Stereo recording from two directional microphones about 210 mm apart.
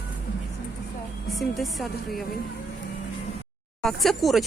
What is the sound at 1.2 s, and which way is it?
Speech, centre (ahead or behind).